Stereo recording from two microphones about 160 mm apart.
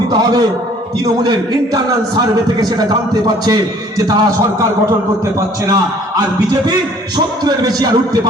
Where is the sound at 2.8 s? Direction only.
25° right (ahead or behind).